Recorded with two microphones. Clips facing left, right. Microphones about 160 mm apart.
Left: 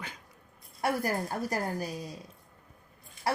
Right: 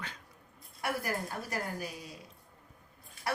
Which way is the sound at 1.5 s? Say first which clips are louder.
Left 5 dB; 35° left (ahead or behind).